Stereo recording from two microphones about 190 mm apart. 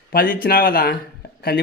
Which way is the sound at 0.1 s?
50° left (ahead or behind).